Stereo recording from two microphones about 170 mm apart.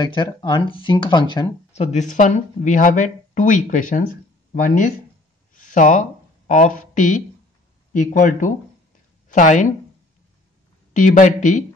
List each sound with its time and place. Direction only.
0.0 s speech: 25° left (ahead or behind)
1.7 s speech: 40° left (ahead or behind)
5.5 s a sound: 50° left (ahead or behind)
7.9 s speech: 50° left (ahead or behind)
10.9 s speech: 50° left (ahead or behind)